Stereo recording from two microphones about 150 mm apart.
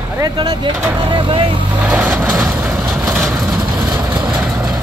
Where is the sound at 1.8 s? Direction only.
10° right (ahead or behind).